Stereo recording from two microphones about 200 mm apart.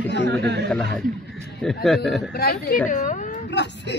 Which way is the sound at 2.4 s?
50° left (ahead or behind).